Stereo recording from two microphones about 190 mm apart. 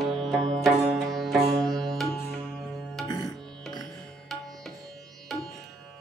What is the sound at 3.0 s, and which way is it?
Music, 20° left (ahead or behind).